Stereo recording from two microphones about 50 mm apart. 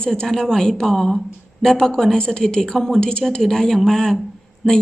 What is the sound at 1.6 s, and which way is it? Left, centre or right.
Speech, centre.